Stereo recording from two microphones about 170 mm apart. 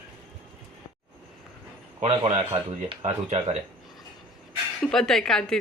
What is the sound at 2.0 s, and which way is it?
Speech, 40° right (ahead or behind).